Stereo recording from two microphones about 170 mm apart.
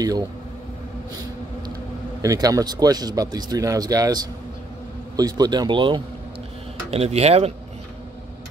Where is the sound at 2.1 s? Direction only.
20° right (ahead or behind); by 7.5 s 40° right (ahead or behind).